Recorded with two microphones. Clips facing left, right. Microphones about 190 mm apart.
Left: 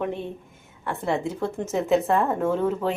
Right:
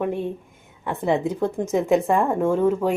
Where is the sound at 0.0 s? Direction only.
10° right (ahead or behind).